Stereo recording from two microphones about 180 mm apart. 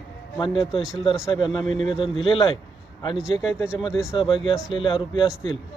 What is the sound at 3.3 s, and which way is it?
Speech, 20° left (ahead or behind).